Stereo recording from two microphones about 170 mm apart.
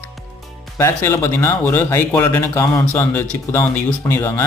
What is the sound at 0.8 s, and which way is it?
Speech, 15° left (ahead or behind).